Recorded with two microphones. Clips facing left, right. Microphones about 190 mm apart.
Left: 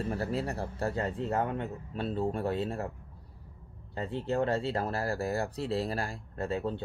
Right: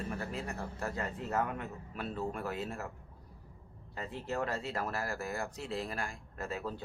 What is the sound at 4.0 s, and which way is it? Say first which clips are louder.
Speech: left 6 dB; 30° left (ahead or behind).